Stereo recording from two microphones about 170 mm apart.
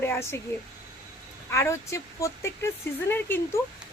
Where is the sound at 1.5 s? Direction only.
15° left (ahead or behind).